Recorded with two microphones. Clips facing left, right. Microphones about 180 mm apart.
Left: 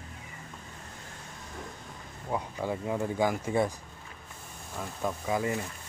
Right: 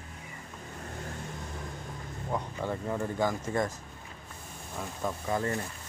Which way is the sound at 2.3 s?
10° left (ahead or behind).